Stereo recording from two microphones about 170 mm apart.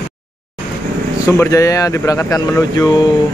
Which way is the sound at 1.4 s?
20° left (ahead or behind).